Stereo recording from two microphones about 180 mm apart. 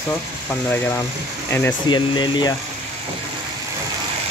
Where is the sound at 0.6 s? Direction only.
10° left (ahead or behind).